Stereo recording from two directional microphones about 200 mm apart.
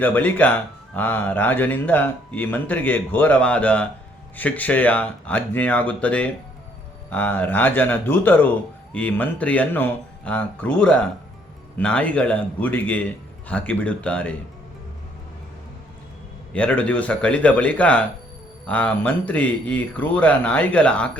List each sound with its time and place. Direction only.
0.0 s a man's voice: 10° left (ahead or behind)
16.5 s a man's voice: 5° left (ahead or behind)